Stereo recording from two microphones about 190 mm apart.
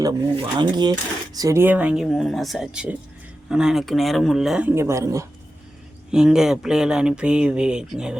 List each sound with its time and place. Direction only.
0.0 s speech: 25° right (ahead or behind)
6.1 s speech: 5° right (ahead or behind)